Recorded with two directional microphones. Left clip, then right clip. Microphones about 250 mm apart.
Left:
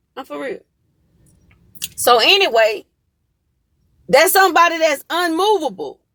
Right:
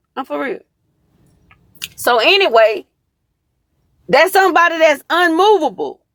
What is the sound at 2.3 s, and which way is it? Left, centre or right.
Speech, centre.